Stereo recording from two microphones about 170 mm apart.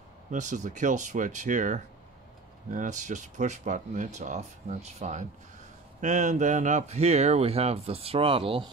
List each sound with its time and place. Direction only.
0.3 s speech: 45° right (ahead or behind)